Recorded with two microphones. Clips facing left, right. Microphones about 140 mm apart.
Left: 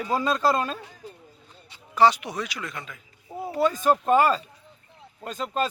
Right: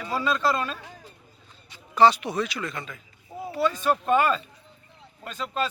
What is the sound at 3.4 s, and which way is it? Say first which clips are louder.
Speech: left 2 dB; 45° left (ahead or behind).